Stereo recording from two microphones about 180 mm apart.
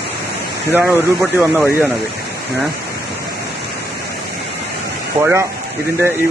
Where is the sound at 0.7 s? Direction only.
10° right (ahead or behind).